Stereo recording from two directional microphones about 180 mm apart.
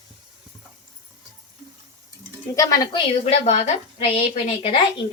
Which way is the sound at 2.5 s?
20° left (ahead or behind).